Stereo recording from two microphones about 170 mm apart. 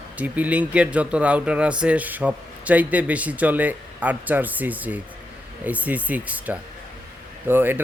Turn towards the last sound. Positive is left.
turn(degrees=-10)  # may be behind; listen again after turning